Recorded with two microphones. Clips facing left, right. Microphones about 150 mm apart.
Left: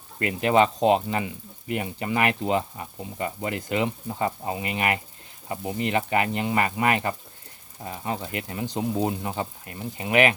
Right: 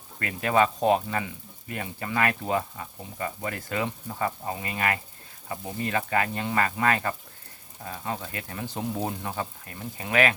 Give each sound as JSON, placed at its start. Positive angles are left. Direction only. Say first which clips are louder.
{"t": 0.2, "sound": "speech", "louder": "left 3 dB", "side_deg": 20}